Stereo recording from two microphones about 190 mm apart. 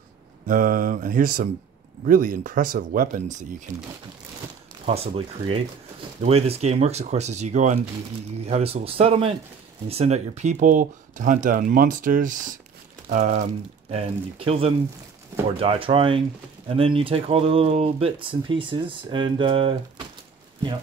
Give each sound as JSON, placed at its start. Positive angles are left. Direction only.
{"t": 0.5, "sound": "speech", "side_deg": -45}
{"t": 4.8, "sound": "speech", "side_deg": -30}